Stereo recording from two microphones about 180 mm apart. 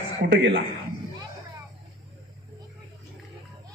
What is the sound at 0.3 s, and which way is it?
Speech, 70° right (ahead or behind).